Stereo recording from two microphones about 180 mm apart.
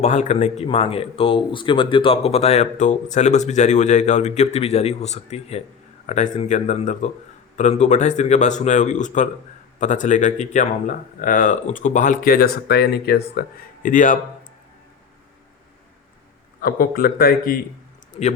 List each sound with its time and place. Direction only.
0.0 s speech: 40° left (ahead or behind); by 13.4 s 60° left (ahead or behind)
13.8 s speech: 45° left (ahead or behind)
16.6 s a man's voice: 55° left (ahead or behind)